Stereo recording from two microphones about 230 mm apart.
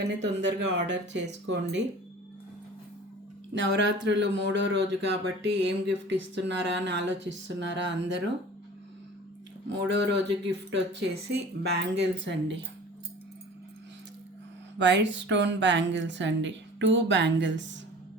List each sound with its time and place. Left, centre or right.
0.1 s speech: right
3.5 s speech: right
9.7 s speech: right
14.8 s speech: right